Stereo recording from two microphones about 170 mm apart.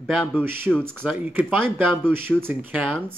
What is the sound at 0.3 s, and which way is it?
Speech, 10° right (ahead or behind).